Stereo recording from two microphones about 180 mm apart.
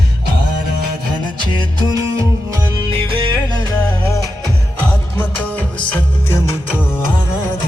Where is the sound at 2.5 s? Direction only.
25° right (ahead or behind).